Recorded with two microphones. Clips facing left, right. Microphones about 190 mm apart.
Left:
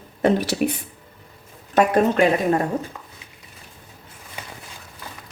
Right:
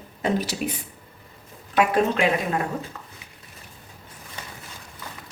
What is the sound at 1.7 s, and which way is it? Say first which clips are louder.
Speech: left 3 dB; 45° left (ahead or behind).